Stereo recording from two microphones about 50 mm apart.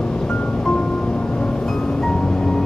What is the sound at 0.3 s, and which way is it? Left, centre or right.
Music, centre.